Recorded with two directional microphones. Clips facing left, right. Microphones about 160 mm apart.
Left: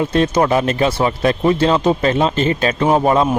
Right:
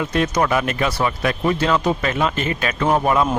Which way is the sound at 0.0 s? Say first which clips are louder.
Left 4 dB; 30° left (ahead or behind).